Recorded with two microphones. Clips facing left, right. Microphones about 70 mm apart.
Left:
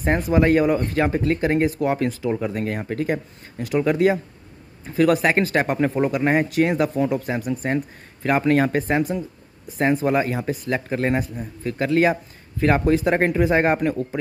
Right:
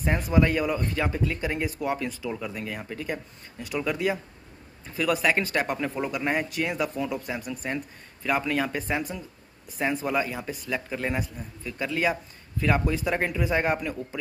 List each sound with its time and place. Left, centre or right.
0.1 s speech: left
0.6 s speech: left
2.2 s speech: left
4.8 s speech: left